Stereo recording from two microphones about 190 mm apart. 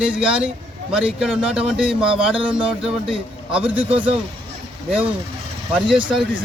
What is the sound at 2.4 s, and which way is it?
Speech, 25° right (ahead or behind).